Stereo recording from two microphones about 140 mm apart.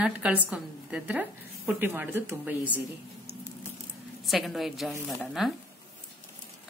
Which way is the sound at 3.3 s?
90° right.